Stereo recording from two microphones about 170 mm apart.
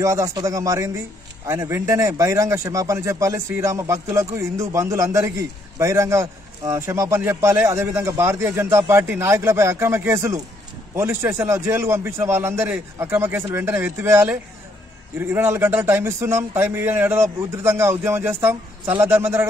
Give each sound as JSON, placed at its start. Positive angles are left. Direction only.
{"t": 0.0, "sound": "a man's voice", "side_deg": -20}